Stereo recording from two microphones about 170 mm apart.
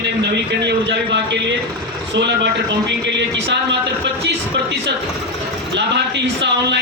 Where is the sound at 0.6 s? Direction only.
85° right.